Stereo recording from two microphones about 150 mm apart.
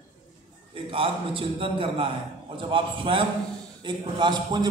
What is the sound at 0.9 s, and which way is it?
A man's voice, 35° right (ahead or behind).